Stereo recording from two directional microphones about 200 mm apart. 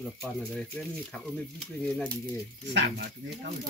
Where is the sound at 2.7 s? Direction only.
60° right (ahead or behind).